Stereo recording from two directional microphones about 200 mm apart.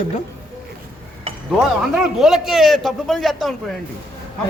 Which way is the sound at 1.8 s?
Centre (ahead or behind).